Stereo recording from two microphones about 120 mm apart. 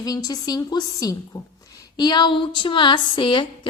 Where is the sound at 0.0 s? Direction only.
30° left (ahead or behind).